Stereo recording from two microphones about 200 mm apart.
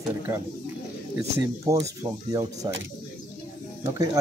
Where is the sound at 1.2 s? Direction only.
15° right (ahead or behind).